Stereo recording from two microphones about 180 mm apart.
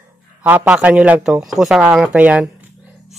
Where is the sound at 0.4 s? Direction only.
10° right (ahead or behind).